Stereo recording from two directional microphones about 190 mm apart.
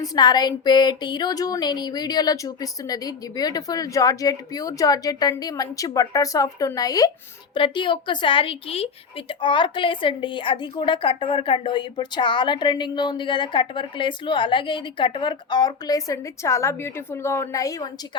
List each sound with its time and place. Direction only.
0.0 s a woman's voice: 20° left (ahead or behind)